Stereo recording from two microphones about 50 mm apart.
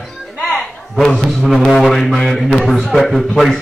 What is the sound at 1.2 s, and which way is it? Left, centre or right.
Music, centre.